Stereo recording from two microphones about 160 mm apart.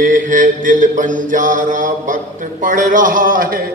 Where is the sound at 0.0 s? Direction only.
55° right (ahead or behind).